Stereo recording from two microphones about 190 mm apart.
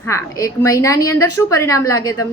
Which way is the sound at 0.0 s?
15° left (ahead or behind).